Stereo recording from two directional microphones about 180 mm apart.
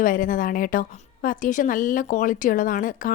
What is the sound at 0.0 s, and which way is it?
A woman's voice, 50° left (ahead or behind).